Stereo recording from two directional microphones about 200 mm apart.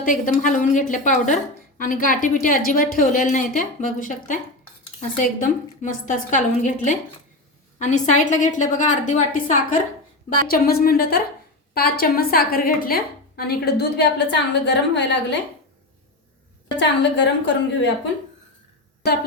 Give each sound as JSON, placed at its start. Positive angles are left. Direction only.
{"t": 0.0, "sound": "a woman's voice", "side_deg": 40}
{"t": 16.7, "sound": "a woman's voice", "side_deg": 60}
{"t": 19.0, "sound": "a woman's voice", "side_deg": 55}